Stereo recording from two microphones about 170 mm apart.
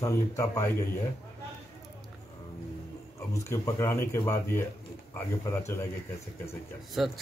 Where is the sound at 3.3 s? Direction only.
15° left (ahead or behind).